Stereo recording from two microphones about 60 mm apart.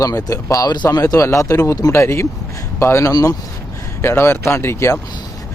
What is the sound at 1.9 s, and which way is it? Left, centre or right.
Speech, left.